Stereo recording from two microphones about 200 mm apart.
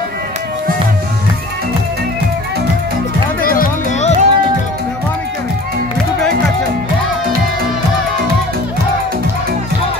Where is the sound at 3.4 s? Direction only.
45° left (ahead or behind).